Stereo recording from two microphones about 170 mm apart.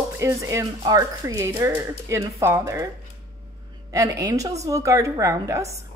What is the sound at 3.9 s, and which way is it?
A woman's voice, 20° right (ahead or behind).